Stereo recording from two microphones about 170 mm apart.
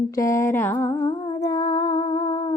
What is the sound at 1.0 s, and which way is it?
Humming, 25° left (ahead or behind).